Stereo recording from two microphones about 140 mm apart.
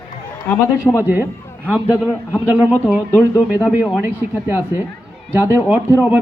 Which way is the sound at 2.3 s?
10° right (ahead or behind).